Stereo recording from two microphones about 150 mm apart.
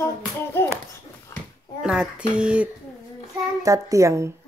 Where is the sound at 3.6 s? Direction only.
20° right (ahead or behind).